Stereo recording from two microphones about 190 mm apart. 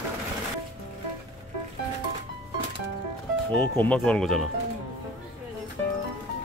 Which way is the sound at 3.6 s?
5° left (ahead or behind).